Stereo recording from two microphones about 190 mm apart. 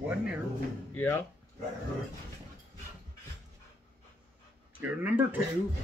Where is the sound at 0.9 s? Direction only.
10° left (ahead or behind).